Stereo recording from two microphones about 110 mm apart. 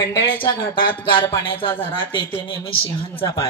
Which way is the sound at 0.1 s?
40° left (ahead or behind).